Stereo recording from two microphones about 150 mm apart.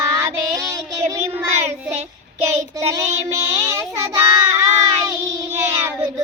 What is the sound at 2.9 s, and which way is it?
Child singing, 20° right (ahead or behind).